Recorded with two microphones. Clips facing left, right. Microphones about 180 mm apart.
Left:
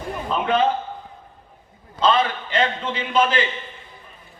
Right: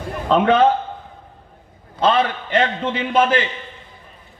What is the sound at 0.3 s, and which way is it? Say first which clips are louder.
Speech: right 7 dB; 90° right.